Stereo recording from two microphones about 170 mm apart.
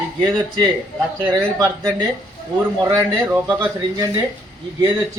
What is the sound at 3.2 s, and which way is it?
Speech, 10° right (ahead or behind).